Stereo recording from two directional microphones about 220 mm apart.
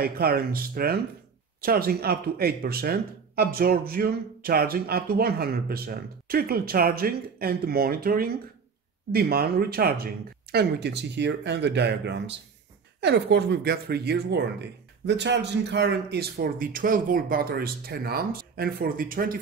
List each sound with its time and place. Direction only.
0.0 s speech: 45° right (ahead or behind)